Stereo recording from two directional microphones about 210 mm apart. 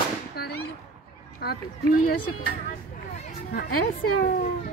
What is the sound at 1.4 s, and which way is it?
Speech, 40° left (ahead or behind).